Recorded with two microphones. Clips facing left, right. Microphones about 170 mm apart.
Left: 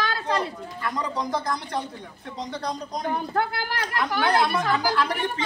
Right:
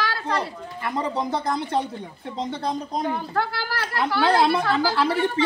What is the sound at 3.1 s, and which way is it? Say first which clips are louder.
Speech: even; 20° left (ahead or behind).